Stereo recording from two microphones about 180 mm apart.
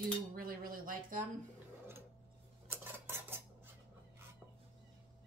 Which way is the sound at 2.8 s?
15° right (ahead or behind).